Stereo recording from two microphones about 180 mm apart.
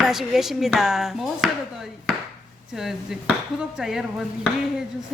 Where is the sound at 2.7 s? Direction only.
Centre (ahead or behind).